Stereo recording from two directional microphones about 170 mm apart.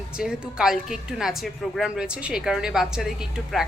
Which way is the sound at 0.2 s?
5° right (ahead or behind).